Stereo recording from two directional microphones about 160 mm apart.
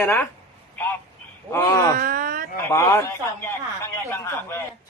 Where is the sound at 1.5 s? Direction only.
15° left (ahead or behind).